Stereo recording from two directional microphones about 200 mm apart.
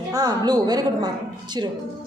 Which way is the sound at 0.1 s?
20° right (ahead or behind).